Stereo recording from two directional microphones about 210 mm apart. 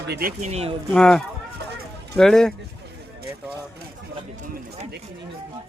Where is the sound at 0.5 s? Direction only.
30° right (ahead or behind).